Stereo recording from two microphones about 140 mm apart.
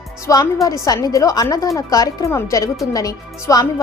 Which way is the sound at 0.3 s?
25° left (ahead or behind).